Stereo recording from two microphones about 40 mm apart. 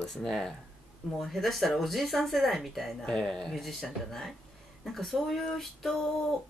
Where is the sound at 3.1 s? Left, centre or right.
Centre.